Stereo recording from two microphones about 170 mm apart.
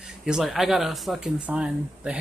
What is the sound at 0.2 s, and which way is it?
Speech, centre (ahead or behind).